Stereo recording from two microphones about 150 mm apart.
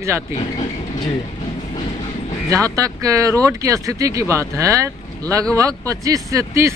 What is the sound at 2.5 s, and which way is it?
Speech, 20° right (ahead or behind).